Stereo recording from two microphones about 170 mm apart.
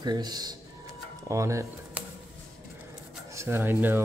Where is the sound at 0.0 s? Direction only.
25° right (ahead or behind).